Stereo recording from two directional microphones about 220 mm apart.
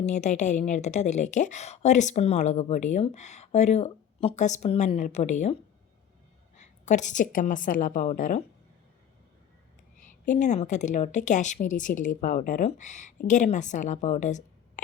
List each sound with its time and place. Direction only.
0.0 s a woman's voice: 30° left (ahead or behind)
6.6 s a woman's voice: 35° left (ahead or behind)
10.0 s a woman's voice: 35° left (ahead or behind)